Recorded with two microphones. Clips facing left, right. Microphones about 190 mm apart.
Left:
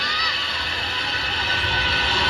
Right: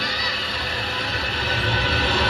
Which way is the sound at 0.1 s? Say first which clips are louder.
Right 3 dB; 50° right (ahead or behind).